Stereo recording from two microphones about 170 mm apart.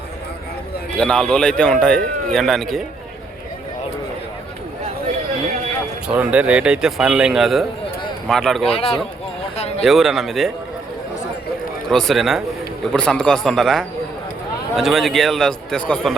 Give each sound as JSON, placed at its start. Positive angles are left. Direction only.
{"t": 0.9, "sound": "a man's voice", "side_deg": 5}
{"t": 6.1, "sound": "a man's voice", "side_deg": -5}
{"t": 8.6, "sound": "speech", "side_deg": 35}
{"t": 9.8, "sound": "a man's voice", "side_deg": 0}
{"t": 11.9, "sound": "a man's voice", "side_deg": 0}